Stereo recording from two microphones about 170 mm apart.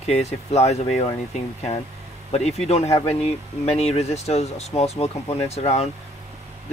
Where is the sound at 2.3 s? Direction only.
40° left (ahead or behind).